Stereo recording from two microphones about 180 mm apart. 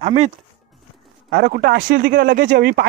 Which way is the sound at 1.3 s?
60° right (ahead or behind).